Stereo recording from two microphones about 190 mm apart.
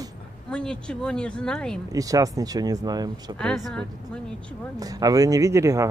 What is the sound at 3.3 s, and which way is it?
Speech, 5° left (ahead or behind).